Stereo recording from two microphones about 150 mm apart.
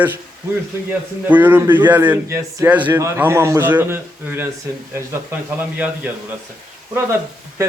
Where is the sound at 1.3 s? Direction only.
10° right (ahead or behind).